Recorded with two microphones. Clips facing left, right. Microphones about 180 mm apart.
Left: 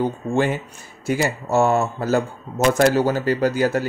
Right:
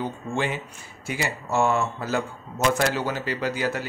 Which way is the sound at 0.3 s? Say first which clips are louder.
Left 5 dB; 45° left (ahead or behind).